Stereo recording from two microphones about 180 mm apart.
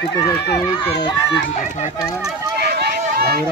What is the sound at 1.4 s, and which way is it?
Speech, 45° left (ahead or behind).